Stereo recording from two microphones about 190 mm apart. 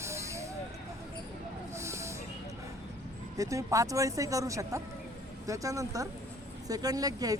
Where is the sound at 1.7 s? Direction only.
15° right (ahead or behind).